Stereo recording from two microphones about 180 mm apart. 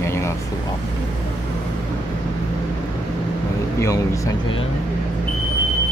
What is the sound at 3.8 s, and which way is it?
Speech, 15° left (ahead or behind).